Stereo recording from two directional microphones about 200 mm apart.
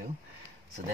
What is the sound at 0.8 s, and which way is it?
Speech, 40° right (ahead or behind).